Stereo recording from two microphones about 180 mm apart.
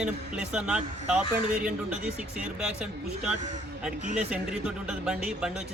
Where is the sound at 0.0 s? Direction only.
5° right (ahead or behind).